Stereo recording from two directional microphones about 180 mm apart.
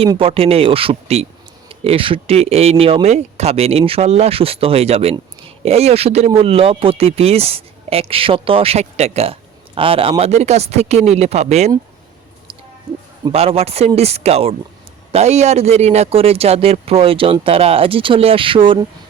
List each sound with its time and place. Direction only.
0.1 s speech: 30° right (ahead or behind)
13.2 s speech: 30° right (ahead or behind)